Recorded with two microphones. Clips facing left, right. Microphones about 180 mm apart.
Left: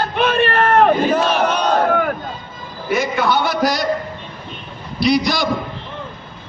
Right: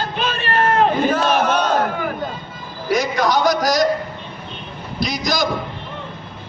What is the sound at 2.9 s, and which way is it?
Speech, 40° right (ahead or behind).